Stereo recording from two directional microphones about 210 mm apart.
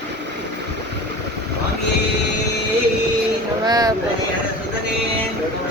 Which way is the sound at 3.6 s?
20° right (ahead or behind).